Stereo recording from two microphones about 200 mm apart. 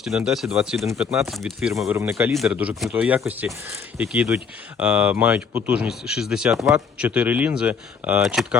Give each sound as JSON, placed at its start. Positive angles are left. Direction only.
{"t": 0.0, "sound": "speech", "side_deg": 0}
{"t": 2.0, "sound": "speech", "side_deg": -10}